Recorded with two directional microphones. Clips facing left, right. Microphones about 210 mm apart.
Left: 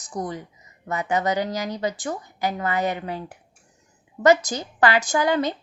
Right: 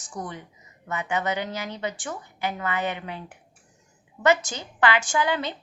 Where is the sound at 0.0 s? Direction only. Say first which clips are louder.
Left 5 dB; 40° left (ahead or behind).